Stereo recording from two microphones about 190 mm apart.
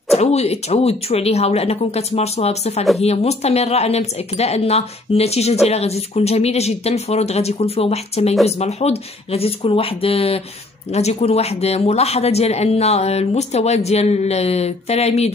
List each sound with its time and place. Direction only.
0.1 s speech: 35° left (ahead or behind)